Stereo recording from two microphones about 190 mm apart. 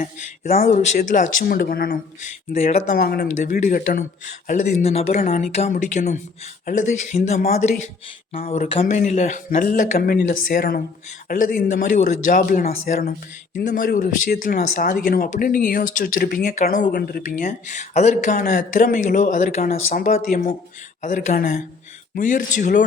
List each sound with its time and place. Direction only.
0.0 s speech: 40° left (ahead or behind)
3.0 s speech: 50° left (ahead or behind)
4.4 s speech: 40° left (ahead or behind)
16.9 s speech: 55° left (ahead or behind)